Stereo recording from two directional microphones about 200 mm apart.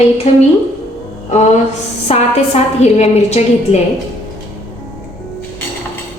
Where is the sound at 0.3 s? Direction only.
30° left (ahead or behind).